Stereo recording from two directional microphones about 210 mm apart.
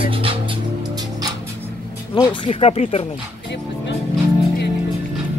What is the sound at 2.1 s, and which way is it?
Speech, 20° left (ahead or behind).